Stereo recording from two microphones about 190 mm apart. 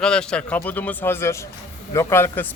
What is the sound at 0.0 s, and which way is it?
Speech, 5° left (ahead or behind).